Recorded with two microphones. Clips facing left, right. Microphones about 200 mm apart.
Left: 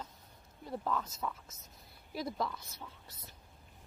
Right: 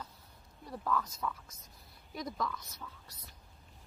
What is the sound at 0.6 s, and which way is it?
A woman's voice, 25° left (ahead or behind).